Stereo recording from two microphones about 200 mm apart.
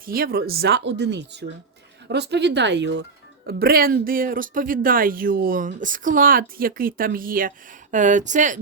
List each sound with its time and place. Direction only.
0.0 s speech: 45° right (ahead or behind)
3.4 s speech: 50° right (ahead or behind)